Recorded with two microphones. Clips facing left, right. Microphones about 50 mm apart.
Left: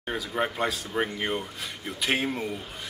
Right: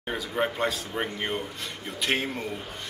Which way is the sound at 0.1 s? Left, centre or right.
Centre.